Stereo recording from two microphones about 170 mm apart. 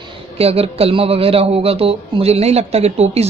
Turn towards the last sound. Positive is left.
turn(degrees=-40)  # may be behind; listen again after turning